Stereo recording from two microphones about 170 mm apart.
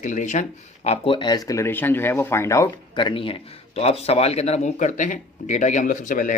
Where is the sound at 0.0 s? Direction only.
45° left (ahead or behind).